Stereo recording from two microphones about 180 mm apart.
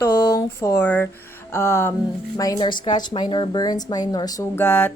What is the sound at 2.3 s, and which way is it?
A woman's voice, 20° left (ahead or behind).